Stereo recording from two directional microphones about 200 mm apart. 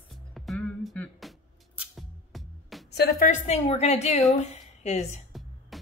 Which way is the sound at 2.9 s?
50° left (ahead or behind).